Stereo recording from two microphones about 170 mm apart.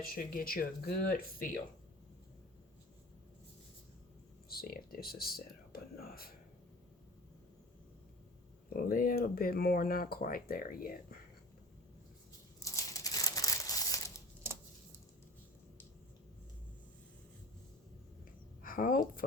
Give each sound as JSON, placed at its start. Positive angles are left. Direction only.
{"t": 0.0, "sound": "speech", "side_deg": 60}
{"t": 4.4, "sound": "speech", "side_deg": 60}
{"t": 8.7, "sound": "speech", "side_deg": 55}
{"t": 12.6, "sound": "crumpling", "side_deg": 20}
{"t": 18.6, "sound": "speech", "side_deg": 55}